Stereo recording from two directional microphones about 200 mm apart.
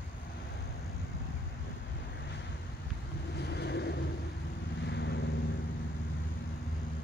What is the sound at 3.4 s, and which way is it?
Vehicle, 55° left (ahead or behind).